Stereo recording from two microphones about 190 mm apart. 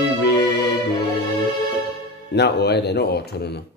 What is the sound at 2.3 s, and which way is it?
Speech, 60° left (ahead or behind).